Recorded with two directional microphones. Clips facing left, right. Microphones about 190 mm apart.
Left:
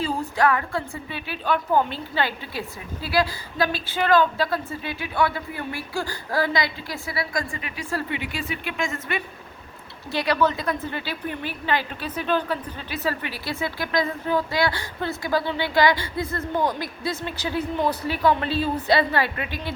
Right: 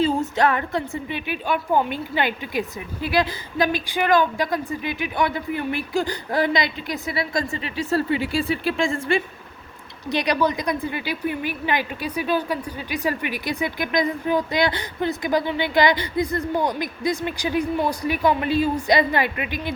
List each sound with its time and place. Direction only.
0.0 s a woman's voice: 25° right (ahead or behind)
10.1 s a woman's voice: 15° right (ahead or behind)